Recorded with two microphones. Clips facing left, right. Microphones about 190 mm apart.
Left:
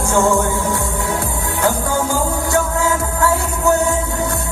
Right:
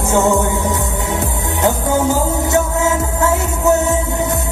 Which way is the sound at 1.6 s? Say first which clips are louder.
Right 3 dB; 20° right (ahead or behind).